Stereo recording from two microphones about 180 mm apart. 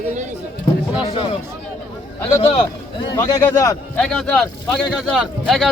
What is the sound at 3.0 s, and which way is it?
Speech, 20° left (ahead or behind).